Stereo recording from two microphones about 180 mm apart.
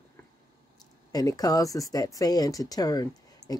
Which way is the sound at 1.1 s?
20° left (ahead or behind).